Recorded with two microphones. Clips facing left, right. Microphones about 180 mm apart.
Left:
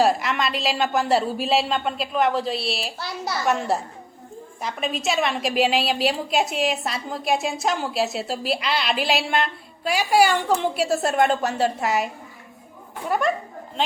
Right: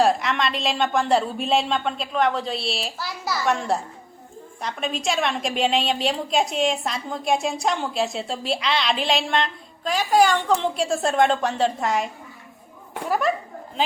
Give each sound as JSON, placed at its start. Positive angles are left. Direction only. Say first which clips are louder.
{"t": 0.0, "sound": "a woman's voice", "louder": "even", "side_deg": 0}